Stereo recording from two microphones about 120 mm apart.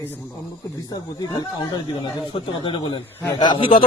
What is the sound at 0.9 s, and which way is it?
Speech, 35° left (ahead or behind).